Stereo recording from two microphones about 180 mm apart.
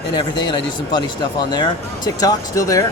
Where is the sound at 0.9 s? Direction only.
25° left (ahead or behind).